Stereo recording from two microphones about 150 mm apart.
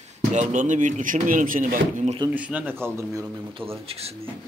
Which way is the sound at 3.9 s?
40° right (ahead or behind).